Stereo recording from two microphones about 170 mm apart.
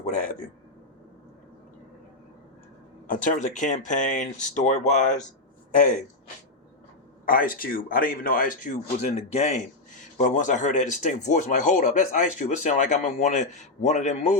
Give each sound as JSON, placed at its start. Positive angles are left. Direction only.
{"t": 0.0, "sound": "speech", "side_deg": 50}
{"t": 3.2, "sound": "speech", "side_deg": 45}
{"t": 7.3, "sound": "speech", "side_deg": 55}